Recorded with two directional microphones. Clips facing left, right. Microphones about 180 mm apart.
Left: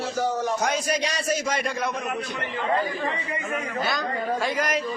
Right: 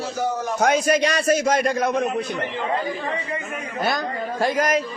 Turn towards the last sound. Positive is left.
turn(degrees=-45)  # may be behind; listen again after turning